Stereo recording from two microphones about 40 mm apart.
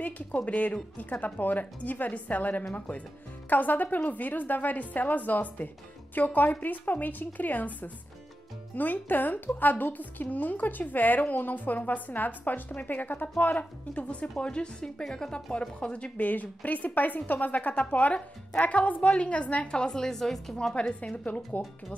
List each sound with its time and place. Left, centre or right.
0.5 s a woman's voice: left
14.4 s a woman's voice: left
16.2 s a woman's voice: left
19.1 s a woman's voice: left; by 20.5 s centre
21.2 s speech: left